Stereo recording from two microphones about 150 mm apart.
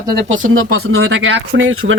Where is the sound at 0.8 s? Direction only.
90° right.